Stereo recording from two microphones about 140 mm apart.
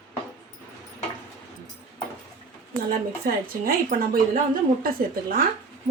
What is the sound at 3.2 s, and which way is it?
Speech, 90° right.